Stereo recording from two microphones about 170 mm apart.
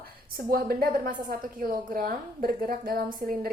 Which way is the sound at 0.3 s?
65° right (ahead or behind).